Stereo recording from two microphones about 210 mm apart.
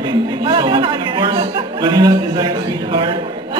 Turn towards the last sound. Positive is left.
turn(degrees=-25)  # may be behind; listen again after turning